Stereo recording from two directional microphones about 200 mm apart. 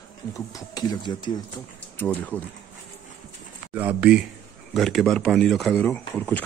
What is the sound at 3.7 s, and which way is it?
Speech, 5° right (ahead or behind).